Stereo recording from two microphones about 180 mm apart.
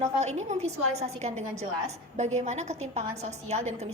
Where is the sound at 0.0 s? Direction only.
40° right (ahead or behind).